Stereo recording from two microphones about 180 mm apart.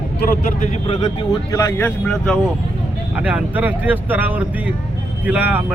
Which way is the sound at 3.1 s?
10° right (ahead or behind).